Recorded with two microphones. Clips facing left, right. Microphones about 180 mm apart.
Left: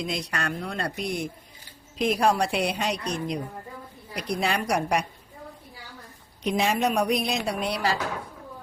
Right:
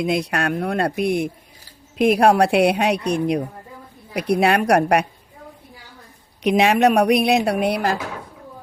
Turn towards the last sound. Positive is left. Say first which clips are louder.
# right 7 dB
turn(degrees=-55)  # may be behind; listen again after turning